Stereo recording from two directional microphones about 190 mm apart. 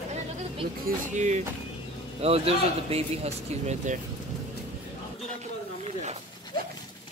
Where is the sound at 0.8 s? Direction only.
40° right (ahead or behind).